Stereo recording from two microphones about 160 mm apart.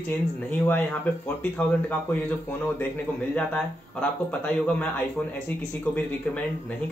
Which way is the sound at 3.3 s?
5° left (ahead or behind).